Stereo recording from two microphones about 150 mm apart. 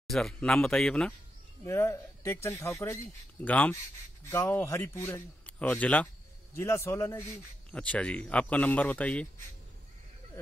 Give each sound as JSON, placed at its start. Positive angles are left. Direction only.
{"t": 0.1, "sound": "speech", "side_deg": 5}
{"t": 1.7, "sound": "speech", "side_deg": 20}